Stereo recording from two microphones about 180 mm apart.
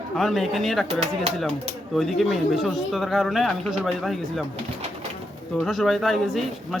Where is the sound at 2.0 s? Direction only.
Centre (ahead or behind).